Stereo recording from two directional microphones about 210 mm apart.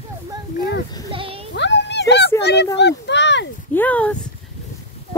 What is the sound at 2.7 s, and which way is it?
Speech, 55° left (ahead or behind).